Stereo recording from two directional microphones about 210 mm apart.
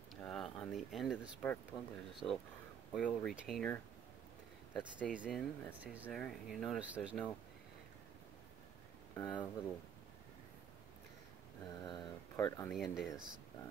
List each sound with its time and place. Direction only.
0.1 s speech: centre (ahead or behind)
4.7 s speech: 5° right (ahead or behind)
6.0 s speech: 5° left (ahead or behind)
9.1 s speech: 20° left (ahead or behind)
11.6 s speech: 20° left (ahead or behind)
12.7 s speech: centre (ahead or behind)